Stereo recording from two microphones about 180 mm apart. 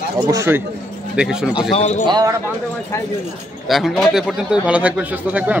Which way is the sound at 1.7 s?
40° left (ahead or behind).